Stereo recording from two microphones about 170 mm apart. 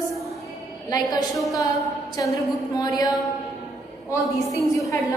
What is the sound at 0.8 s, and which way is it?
A woman's voice, 20° left (ahead or behind).